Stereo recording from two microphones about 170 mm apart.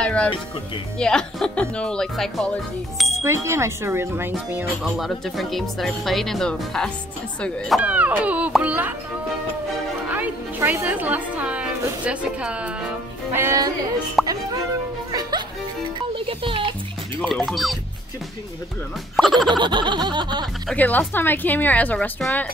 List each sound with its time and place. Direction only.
0.0 s music: 5° left (ahead or behind)
0.9 s speech: 5° left (ahead or behind)
3.2 s speech: 15° right (ahead or behind)
10.0 s a woman's voice: 10° right (ahead or behind)
14.2 s speech: centre (ahead or behind)
15.0 s music: 25° right (ahead or behind)
16.2 s speech: 30° right (ahead or behind)
17.5 s speech: centre (ahead or behind)
19.1 s speech: centre (ahead or behind)
19.5 s a sound: 25° right (ahead or behind)
20.6 s a woman's voice: 10° left (ahead or behind)